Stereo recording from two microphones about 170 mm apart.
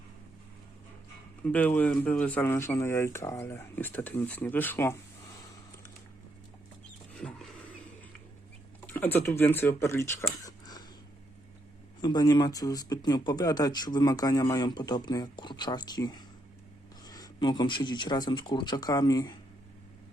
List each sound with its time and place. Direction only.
1.5 s speech: 10° left (ahead or behind)
7.2 s vehicle: 5° left (ahead or behind)
8.9 s speech: 10° left (ahead or behind)
10.4 s a sound: 20° left (ahead or behind)
12.0 s speech: 25° left (ahead or behind)